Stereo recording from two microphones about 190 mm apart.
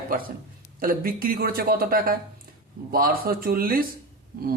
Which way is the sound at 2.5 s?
50° right (ahead or behind).